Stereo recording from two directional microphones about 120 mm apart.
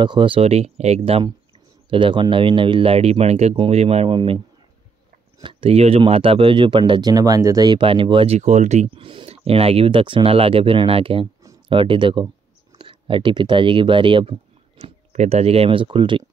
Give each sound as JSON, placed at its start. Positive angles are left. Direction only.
{"t": 0.0, "sound": "speech", "side_deg": -40}
{"t": 1.9, "sound": "speech", "side_deg": -45}
{"t": 5.4, "sound": "speech", "side_deg": -50}
{"t": 8.4, "sound": "speech", "side_deg": -80}
{"t": 9.0, "sound": "speech", "side_deg": -50}
{"t": 14.8, "sound": "speech", "side_deg": -60}